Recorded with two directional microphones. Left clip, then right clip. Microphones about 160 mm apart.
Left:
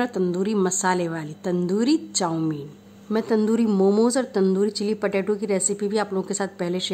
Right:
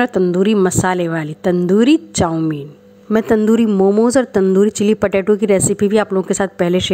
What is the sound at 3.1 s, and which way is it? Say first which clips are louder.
Speech: right 9 dB; 35° right (ahead or behind).